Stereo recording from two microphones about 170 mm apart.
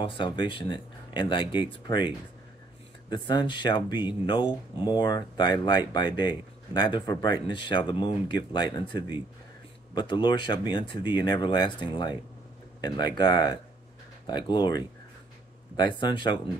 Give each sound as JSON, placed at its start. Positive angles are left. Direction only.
{"t": 0.0, "sound": "speech", "side_deg": 30}
{"t": 3.3, "sound": "speech", "side_deg": 25}